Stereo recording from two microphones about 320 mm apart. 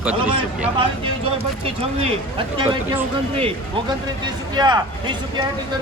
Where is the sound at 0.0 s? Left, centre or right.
Centre.